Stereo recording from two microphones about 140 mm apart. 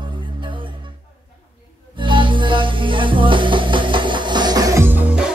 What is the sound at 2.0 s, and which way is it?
Music, 35° right (ahead or behind).